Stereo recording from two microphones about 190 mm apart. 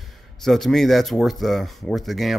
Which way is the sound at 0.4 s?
Centre (ahead or behind).